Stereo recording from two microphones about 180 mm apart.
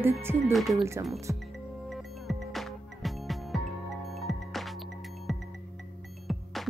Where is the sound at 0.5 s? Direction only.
Centre (ahead or behind).